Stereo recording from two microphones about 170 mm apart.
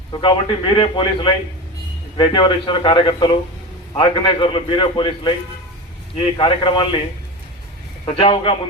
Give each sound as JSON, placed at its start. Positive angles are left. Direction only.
{"t": 0.1, "sound": "a man's voice", "side_deg": 30}
{"t": 8.0, "sound": "a man's voice", "side_deg": 35}